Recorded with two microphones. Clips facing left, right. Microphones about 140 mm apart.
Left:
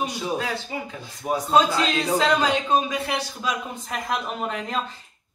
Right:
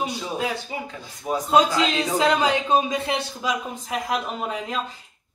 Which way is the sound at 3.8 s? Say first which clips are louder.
Right 2 dB; 10° right (ahead or behind).